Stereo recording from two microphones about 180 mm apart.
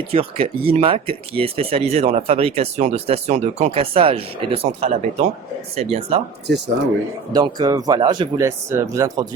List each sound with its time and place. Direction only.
0.1 s speech: 35° right (ahead or behind)
6.5 s speech: 65° right (ahead or behind)
7.3 s speech: 20° right (ahead or behind)